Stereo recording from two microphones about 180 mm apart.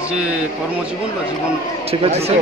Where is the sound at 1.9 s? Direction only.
35° right (ahead or behind).